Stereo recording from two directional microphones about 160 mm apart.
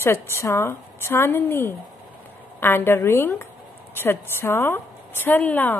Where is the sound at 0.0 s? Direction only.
15° left (ahead or behind).